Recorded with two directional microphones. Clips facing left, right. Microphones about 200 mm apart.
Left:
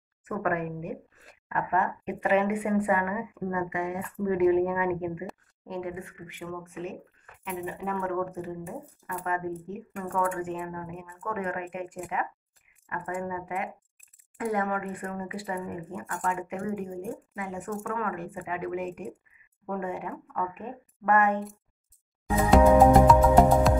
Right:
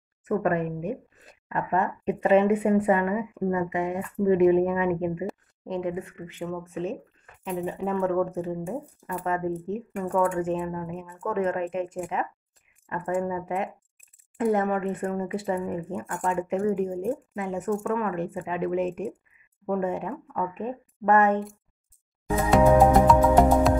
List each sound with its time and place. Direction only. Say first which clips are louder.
0.3 s speech: right 5 dB; 25° right (ahead or behind)
7.4 s speech: right 5 dB; 30° right (ahead or behind)
14.3 s speech: right 5 dB; 25° right (ahead or behind)
22.5 s music: even; centre (ahead or behind)